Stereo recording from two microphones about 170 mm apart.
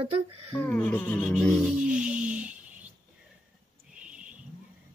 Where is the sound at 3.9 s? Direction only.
5° right (ahead or behind).